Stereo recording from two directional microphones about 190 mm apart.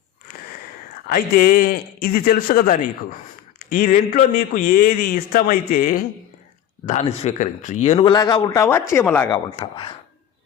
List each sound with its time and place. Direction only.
1.0 s a man's voice: 50° left (ahead or behind)
6.8 s a man's voice: 40° left (ahead or behind); by 9.4 s 10° left (ahead or behind)
9.5 s a man's voice: 25° left (ahead or behind)